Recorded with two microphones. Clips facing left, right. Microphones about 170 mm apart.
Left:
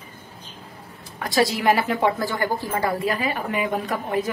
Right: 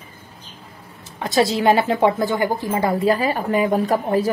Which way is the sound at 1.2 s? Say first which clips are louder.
Right 3 dB; 25° right (ahead or behind).